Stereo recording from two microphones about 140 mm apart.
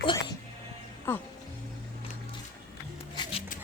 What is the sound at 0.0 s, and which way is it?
Music, 35° left (ahead or behind).